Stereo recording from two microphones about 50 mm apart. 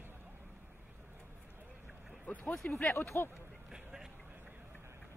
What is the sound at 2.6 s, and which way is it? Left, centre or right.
Speech, left.